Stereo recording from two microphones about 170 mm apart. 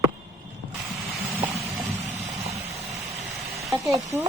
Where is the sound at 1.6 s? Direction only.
Centre (ahead or behind).